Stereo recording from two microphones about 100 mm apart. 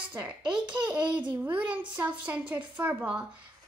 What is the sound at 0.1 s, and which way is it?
A woman's voice, 15° right (ahead or behind).